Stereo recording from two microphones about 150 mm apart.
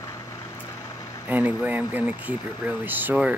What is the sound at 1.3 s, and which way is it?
Speech, 10° right (ahead or behind).